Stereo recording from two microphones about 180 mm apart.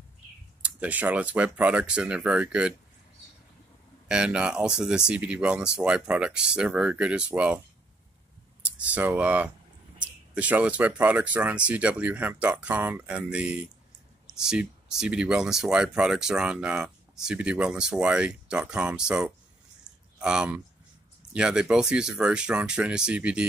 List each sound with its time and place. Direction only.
0.6 s speech: 5° right (ahead or behind)
4.1 s speech: 5° right (ahead or behind)
8.7 s speech: 10° right (ahead or behind)